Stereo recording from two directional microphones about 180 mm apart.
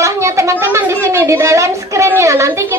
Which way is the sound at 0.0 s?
15° right (ahead or behind).